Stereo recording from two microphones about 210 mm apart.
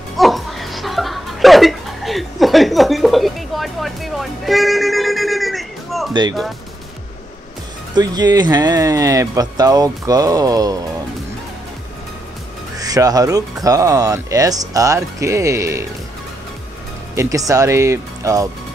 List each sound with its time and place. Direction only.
0.2 s music: centre (ahead or behind)
7.9 s speech: 20° right (ahead or behind)
12.7 s speech: 15° right (ahead or behind)
17.1 s speech: 15° right (ahead or behind)